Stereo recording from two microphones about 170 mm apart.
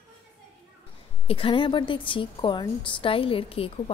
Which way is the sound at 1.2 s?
35° left (ahead or behind).